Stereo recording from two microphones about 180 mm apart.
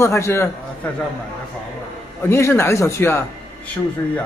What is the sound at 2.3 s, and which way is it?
A man's voice, 15° left (ahead or behind).